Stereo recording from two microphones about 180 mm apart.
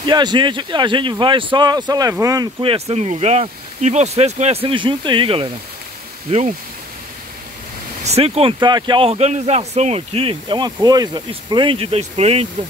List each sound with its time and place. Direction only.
0.0 s speech: 25° right (ahead or behind)
2.6 s speech: 35° right (ahead or behind)
8.0 s speech: 35° right (ahead or behind)